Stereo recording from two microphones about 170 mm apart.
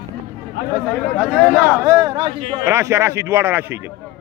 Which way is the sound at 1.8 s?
20° right (ahead or behind).